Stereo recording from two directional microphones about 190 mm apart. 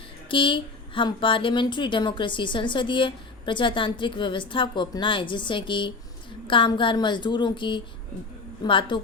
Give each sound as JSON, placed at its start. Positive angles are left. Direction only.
{"t": 0.3, "sound": "a woman's voice", "side_deg": 25}